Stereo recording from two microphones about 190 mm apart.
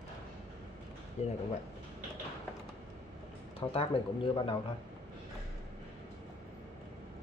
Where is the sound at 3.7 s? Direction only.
30° left (ahead or behind).